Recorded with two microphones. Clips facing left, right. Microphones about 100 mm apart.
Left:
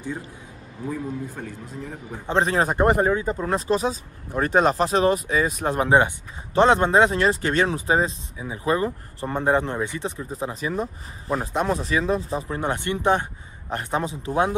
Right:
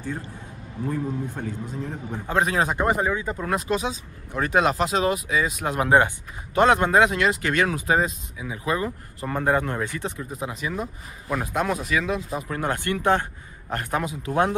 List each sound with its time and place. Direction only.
1.3 s a man's voice: centre (ahead or behind)
2.2 s speech: 30° left (ahead or behind); by 3.1 s 50° left (ahead or behind)
3.1 s speech: 35° left (ahead or behind)
5.9 s speech: 20° left (ahead or behind)
10.3 s speech: 35° left (ahead or behind)